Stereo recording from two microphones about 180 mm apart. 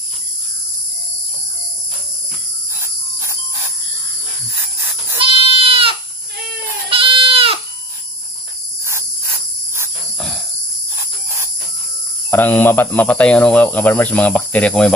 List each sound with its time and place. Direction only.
5.2 s sheep: 30° right (ahead or behind)
6.9 s goat: 30° right (ahead or behind)
10.1 s cricket: centre (ahead or behind)
12.3 s speech: 10° left (ahead or behind)